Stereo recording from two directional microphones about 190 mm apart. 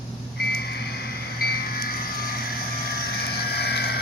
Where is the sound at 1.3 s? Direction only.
50° left (ahead or behind).